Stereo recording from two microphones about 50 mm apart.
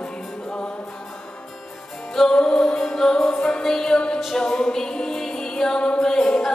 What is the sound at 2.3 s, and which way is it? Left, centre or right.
Music, centre.